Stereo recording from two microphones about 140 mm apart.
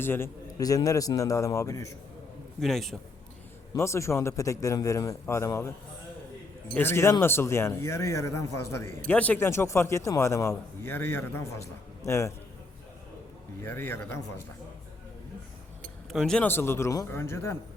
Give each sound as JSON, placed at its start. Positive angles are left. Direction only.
{"t": 0.0, "sound": "a man's voice", "side_deg": 15}
{"t": 2.6, "sound": "a man's voice", "side_deg": 0}
{"t": 3.8, "sound": "speech", "side_deg": 20}
{"t": 6.7, "sound": "a man's voice", "side_deg": 15}
{"t": 13.6, "sound": "a man's voice", "side_deg": 15}
{"t": 16.1, "sound": "a man's voice", "side_deg": 5}
{"t": 16.5, "sound": "a man's voice", "side_deg": 15}